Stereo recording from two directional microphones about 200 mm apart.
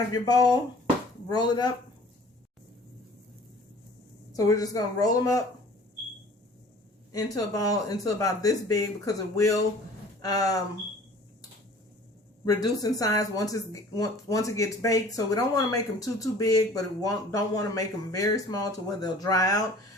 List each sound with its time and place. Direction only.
0.1 s speech: 20° left (ahead or behind)
4.3 s speech: 15° left (ahead or behind)
7.3 s speech: 15° left (ahead or behind)
12.5 s speech: 20° left (ahead or behind)